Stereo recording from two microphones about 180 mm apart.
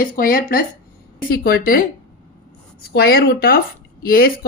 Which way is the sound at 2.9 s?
60° left (ahead or behind).